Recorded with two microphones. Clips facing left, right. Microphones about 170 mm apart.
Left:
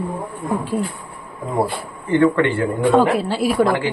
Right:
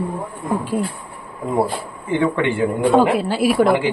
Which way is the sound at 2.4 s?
10° right (ahead or behind).